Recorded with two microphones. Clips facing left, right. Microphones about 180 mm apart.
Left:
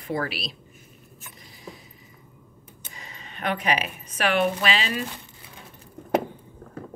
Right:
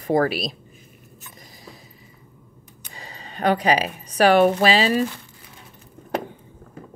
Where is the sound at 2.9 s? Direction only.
35° right (ahead or behind).